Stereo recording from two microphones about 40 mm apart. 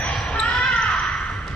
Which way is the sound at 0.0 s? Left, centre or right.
Left.